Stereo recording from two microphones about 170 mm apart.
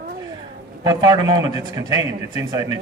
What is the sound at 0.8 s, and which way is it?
A man's voice, 25° right (ahead or behind).